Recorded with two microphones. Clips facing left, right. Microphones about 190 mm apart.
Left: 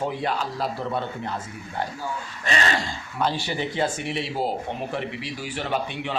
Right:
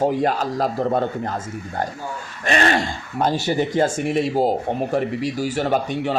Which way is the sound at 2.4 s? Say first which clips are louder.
Right 7 dB; 55° right (ahead or behind).